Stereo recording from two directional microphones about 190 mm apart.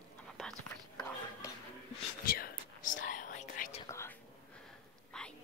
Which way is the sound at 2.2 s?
50° left (ahead or behind).